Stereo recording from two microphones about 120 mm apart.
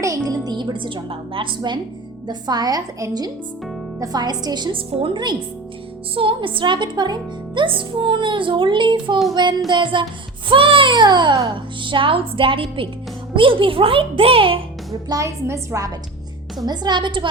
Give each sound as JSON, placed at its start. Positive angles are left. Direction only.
{"t": 0.0, "sound": "a woman's voice", "side_deg": -30}
{"t": 15.1, "sound": "a woman's voice", "side_deg": -25}
{"t": 16.6, "sound": "a woman's voice", "side_deg": -35}